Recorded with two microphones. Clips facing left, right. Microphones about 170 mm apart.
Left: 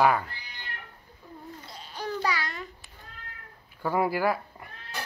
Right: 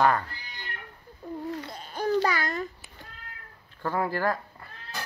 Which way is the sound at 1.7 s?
50° right (ahead or behind).